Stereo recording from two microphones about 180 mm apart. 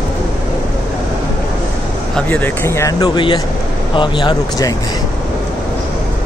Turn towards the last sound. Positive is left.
turn(degrees=20)  # may be behind; listen again after turning